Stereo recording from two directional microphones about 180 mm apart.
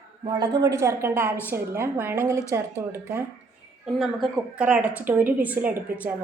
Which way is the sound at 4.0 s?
Centre (ahead or behind).